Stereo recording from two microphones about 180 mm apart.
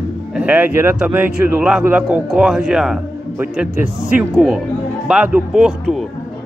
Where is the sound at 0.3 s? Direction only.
5° right (ahead or behind).